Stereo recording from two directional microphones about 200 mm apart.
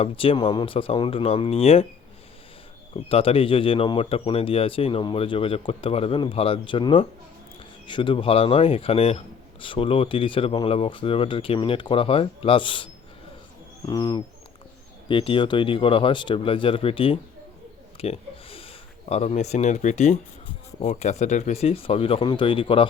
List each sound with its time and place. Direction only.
0.0 s speech: 25° left (ahead or behind)
2.9 s speech: 30° left (ahead or behind)
17.9 s a sound: 30° left (ahead or behind)
20.7 s speech: 35° left (ahead or behind)